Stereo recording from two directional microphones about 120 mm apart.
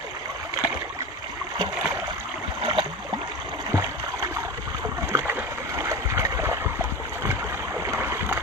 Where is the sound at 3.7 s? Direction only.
25° right (ahead or behind).